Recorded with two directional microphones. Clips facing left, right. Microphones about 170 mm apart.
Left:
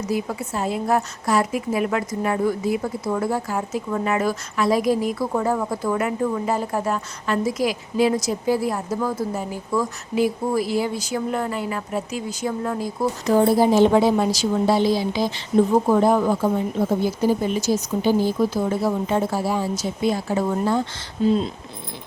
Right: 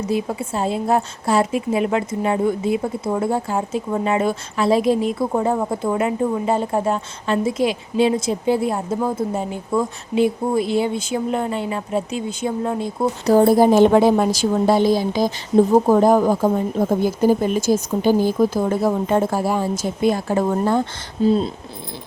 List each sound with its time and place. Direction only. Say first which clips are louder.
0.0 s a woman's voice: right 3 dB; 25° right (ahead or behind)
13.2 s speech: right 4 dB; 40° right (ahead or behind)
21.2 s speech: right 2 dB; 35° right (ahead or behind)